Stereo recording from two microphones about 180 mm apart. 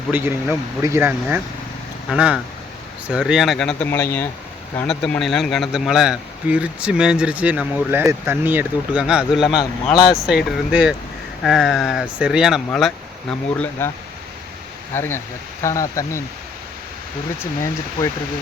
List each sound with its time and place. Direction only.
0.1 s speech: 10° right (ahead or behind)
13.5 s speech: 10° left (ahead or behind)
14.9 s speech: 10° left (ahead or behind)
17.4 s speech: 15° left (ahead or behind)